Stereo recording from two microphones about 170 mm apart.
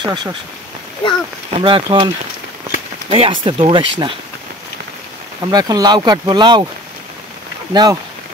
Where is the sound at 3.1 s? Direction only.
30° right (ahead or behind).